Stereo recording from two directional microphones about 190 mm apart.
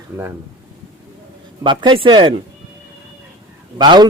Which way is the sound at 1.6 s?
25° right (ahead or behind).